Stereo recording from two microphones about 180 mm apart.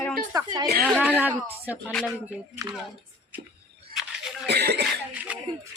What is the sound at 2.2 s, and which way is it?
Speech, 15° right (ahead or behind).